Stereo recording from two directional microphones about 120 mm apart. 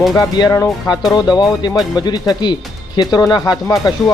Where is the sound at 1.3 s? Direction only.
35° left (ahead or behind).